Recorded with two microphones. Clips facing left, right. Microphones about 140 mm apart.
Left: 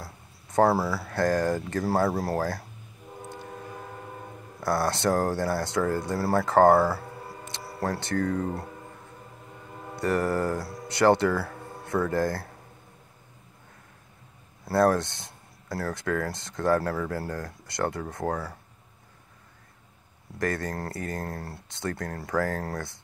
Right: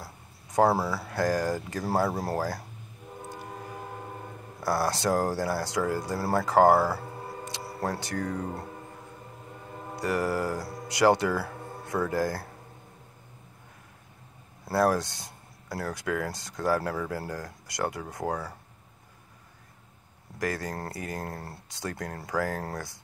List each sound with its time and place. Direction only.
0.0 s a sound: 20° right (ahead or behind)
0.8 s mantra: 20° right (ahead or behind)
1.1 s speech: 10° right (ahead or behind)
4.7 s speech: 10° right (ahead or behind)
6.1 s mantra: 20° right (ahead or behind)
6.4 s speech: 10° right (ahead or behind)
9.9 s speech: 10° right (ahead or behind)
14.8 s speech: 10° right (ahead or behind)
20.3 s speech: 10° right (ahead or behind)
20.7 s mantra: 20° right (ahead or behind)
21.8 s speech: 20° right (ahead or behind)